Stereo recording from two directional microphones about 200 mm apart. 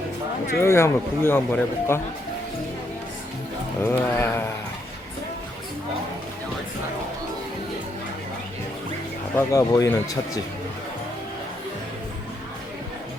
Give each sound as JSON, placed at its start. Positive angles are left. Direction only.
{"t": 0.6, "sound": "speech", "side_deg": 15}
{"t": 3.8, "sound": "speech", "side_deg": 10}
{"t": 9.3, "sound": "speech", "side_deg": 15}